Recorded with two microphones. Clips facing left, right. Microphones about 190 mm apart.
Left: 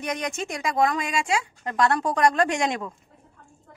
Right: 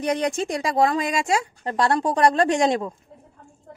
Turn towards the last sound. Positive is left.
turn(degrees=-30)  # may be behind; listen again after turning